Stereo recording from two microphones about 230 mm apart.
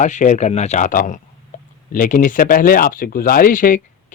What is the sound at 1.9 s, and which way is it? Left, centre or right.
Speech, left.